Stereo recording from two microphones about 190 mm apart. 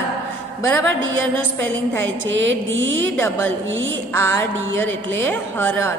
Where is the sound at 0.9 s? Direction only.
90° right.